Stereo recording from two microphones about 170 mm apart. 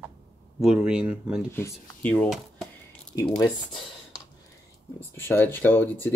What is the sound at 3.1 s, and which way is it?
Speech, 20° left (ahead or behind).